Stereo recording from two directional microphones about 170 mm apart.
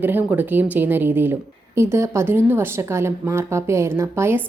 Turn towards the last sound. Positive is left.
turn(degrees=-15)  # may be behind; listen again after turning